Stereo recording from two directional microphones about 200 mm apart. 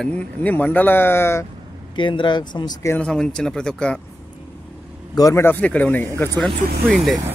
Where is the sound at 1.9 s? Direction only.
25° left (ahead or behind).